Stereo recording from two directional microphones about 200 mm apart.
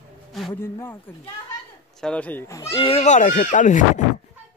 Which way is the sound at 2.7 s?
25° left (ahead or behind).